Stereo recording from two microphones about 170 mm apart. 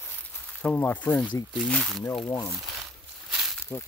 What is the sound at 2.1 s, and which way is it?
Speech, 25° left (ahead or behind).